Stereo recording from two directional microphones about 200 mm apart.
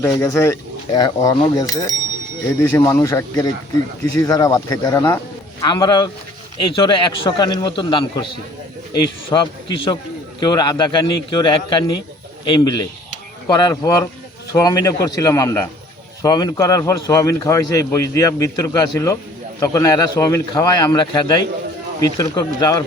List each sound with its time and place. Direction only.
0.0 s a man's voice: 15° left (ahead or behind)